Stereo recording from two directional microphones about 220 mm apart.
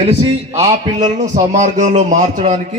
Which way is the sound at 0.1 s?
25° right (ahead or behind).